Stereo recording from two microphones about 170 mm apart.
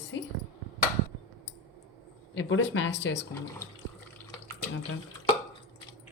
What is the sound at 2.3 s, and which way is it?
Speech, 90° left.